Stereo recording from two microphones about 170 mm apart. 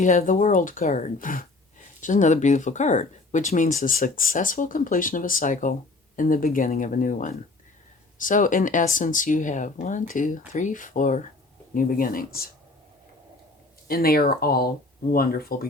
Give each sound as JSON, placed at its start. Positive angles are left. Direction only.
{"t": 0.0, "sound": "speech", "side_deg": 45}
{"t": 13.8, "sound": "speech", "side_deg": 60}